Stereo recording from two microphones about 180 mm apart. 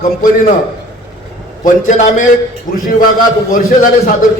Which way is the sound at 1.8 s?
45° left (ahead or behind).